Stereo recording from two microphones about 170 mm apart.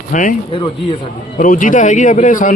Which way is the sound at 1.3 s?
50° left (ahead or behind).